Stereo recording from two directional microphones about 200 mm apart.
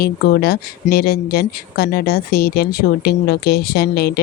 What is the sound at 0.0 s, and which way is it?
Speech, 50° left (ahead or behind).